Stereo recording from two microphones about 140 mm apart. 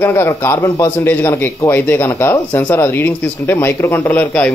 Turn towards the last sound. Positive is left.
turn(degrees=10)  # may be behind; listen again after turning